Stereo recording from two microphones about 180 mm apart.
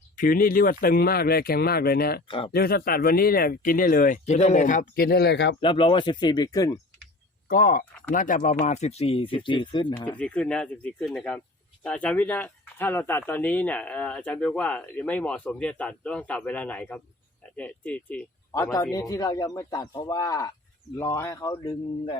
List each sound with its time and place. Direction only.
0.2 s speech: 50° left (ahead or behind)
2.2 s a man's voice: 30° left (ahead or behind)
2.5 s speech: 60° left (ahead or behind)
5.5 s a man's voice: 30° left (ahead or behind)
7.4 s speech: 50° left (ahead or behind); by 10.2 s 25° left (ahead or behind)
10.2 s a man's voice: 5° left (ahead or behind)